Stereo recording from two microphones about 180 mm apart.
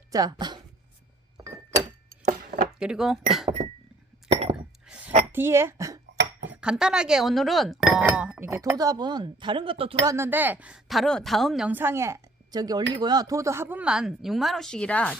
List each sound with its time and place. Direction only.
0.1 s speech: 20° right (ahead or behind)
2.7 s speech: 5° right (ahead or behind)
4.5 s chink: 5° right (ahead or behind)
5.3 s speech: 15° right (ahead or behind)
6.5 s speech: 5° right (ahead or behind); by 9.9 s 30° right (ahead or behind)
10.1 s speech: 10° right (ahead or behind); by 15.2 s 5° left (ahead or behind)